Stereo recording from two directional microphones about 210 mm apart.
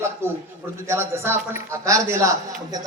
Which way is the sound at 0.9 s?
10° right (ahead or behind).